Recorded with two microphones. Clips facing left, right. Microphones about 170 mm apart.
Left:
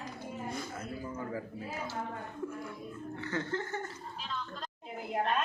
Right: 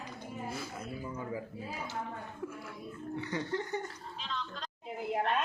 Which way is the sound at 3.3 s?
15° right (ahead or behind).